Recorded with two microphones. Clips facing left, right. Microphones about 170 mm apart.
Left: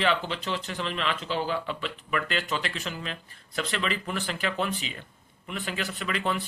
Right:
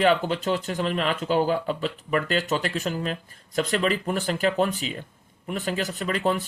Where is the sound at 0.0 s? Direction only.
45° right (ahead or behind).